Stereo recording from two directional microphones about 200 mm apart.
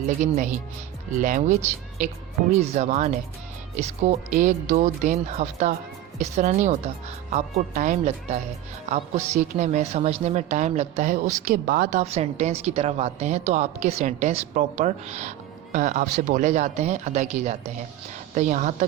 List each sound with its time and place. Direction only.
0.2 s a woman's voice: 40° right (ahead or behind)